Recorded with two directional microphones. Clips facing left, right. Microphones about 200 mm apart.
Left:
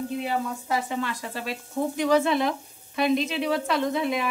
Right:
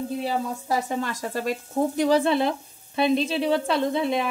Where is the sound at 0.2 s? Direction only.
40° right (ahead or behind).